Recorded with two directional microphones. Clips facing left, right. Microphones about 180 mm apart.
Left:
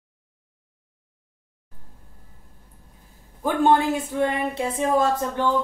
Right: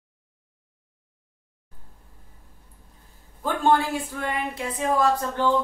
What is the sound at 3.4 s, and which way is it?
A man's voice, 20° left (ahead or behind).